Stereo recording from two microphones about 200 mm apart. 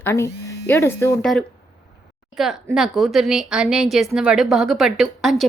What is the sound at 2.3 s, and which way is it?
A woman's voice, centre (ahead or behind).